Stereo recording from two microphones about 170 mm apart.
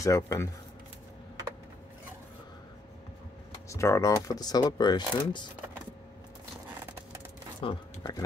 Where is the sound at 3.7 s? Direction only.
15° left (ahead or behind).